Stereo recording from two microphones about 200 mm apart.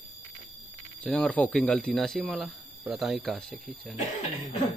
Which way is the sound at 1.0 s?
5° left (ahead or behind).